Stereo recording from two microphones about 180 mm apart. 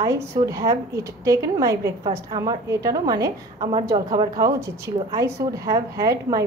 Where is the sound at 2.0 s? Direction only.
30° right (ahead or behind).